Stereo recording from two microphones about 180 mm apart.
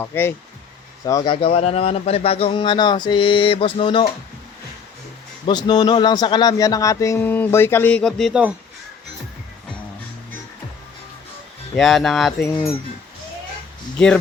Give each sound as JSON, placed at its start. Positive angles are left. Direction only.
{"t": 0.0, "sound": "a man's voice", "side_deg": 15}
{"t": 5.5, "sound": "speech", "side_deg": 25}
{"t": 11.8, "sound": "speech", "side_deg": 0}